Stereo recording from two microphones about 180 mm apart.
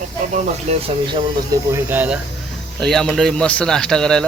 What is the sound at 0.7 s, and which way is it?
Speech, 35° right (ahead or behind).